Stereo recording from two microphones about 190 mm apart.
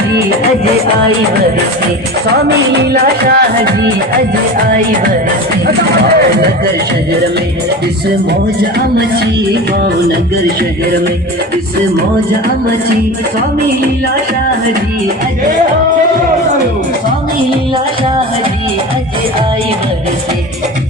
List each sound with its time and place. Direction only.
2.9 s speech: 50° right (ahead or behind)